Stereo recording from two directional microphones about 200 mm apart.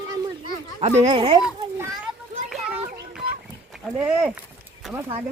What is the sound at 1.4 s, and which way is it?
Speech, 5° right (ahead or behind).